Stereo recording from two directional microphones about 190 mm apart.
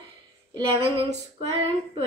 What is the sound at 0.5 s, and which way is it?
Speech, 30° right (ahead or behind).